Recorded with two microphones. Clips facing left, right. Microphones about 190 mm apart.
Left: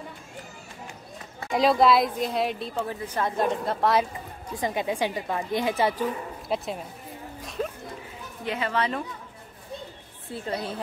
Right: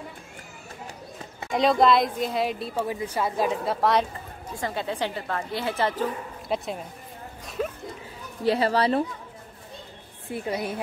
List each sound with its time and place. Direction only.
1.5 s a woman's voice: centre (ahead or behind)
2.8 s a woman's voice: 10° right (ahead or behind)
4.6 s a woman's voice: 15° left (ahead or behind)
6.5 s a woman's voice: centre (ahead or behind)
8.5 s speech: 35° right (ahead or behind)
10.3 s a woman's voice: 15° right (ahead or behind)